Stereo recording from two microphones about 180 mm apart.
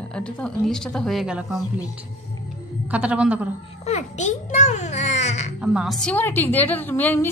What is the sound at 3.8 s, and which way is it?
A child's voice, 40° left (ahead or behind).